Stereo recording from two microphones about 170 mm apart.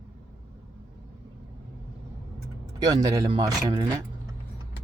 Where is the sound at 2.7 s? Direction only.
25° right (ahead or behind).